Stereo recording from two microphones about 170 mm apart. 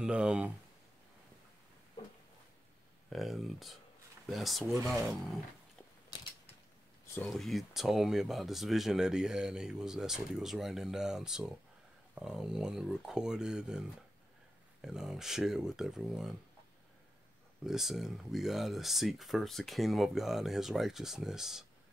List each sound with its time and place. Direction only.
0.0 s speech: 5° right (ahead or behind)
3.1 s speech: centre (ahead or behind)
6.1 s mechanisms: 25° left (ahead or behind)
7.2 s speech: centre (ahead or behind)
17.6 s speech: centre (ahead or behind)